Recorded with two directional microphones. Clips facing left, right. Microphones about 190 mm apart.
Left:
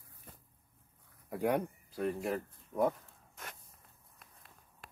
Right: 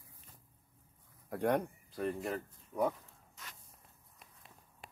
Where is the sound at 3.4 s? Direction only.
55° left (ahead or behind).